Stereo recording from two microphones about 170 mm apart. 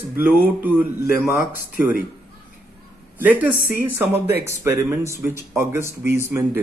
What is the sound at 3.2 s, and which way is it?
Speech, 10° right (ahead or behind).